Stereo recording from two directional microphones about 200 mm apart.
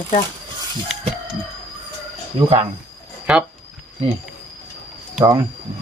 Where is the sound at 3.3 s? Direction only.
5° right (ahead or behind).